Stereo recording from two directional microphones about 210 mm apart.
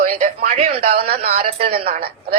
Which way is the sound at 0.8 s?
45° right (ahead or behind).